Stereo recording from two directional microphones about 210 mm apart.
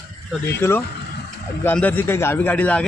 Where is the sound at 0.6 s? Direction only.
10° left (ahead or behind).